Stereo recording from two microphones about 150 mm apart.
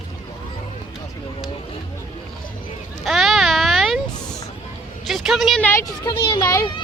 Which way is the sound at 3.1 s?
Centre (ahead or behind).